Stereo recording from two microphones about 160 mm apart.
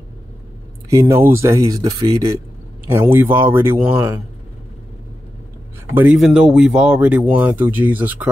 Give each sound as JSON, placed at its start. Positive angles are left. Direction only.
{"t": 0.8, "sound": "speech", "side_deg": -20}
{"t": 5.9, "sound": "speech", "side_deg": -5}